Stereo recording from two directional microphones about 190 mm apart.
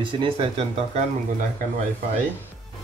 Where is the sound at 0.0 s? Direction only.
25° right (ahead or behind).